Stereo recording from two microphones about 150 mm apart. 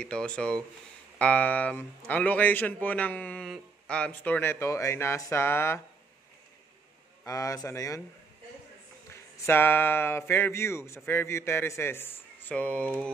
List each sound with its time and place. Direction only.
0.0 s speech: 5° left (ahead or behind)
7.2 s speech: 25° left (ahead or behind)
9.5 s speech: 15° left (ahead or behind)